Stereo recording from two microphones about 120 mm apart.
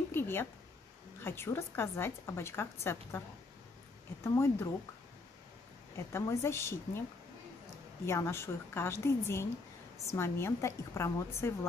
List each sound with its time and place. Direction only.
0.1 s a sound: 20° left (ahead or behind)
1.2 s a woman's voice: 20° left (ahead or behind)
4.2 s a woman's voice: 20° left (ahead or behind)
6.1 s a woman's voice: 20° left (ahead or behind)